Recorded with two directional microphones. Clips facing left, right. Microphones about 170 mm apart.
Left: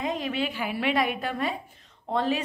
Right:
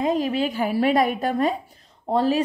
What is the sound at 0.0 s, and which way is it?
Speech, 35° right (ahead or behind).